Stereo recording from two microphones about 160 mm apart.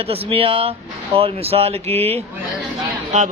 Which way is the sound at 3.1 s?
50° right (ahead or behind).